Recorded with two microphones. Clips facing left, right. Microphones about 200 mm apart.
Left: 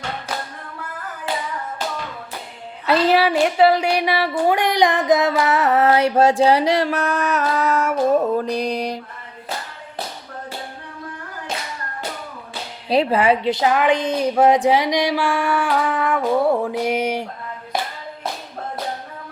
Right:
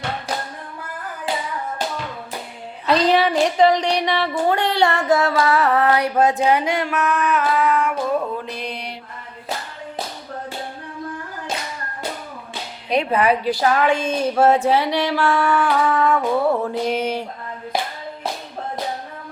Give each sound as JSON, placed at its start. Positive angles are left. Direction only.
{"t": 2.8, "sound": "a woman's voice", "side_deg": 5}
{"t": 8.4, "sound": "mantra", "side_deg": 40}
{"t": 12.9, "sound": "a woman's voice", "side_deg": 30}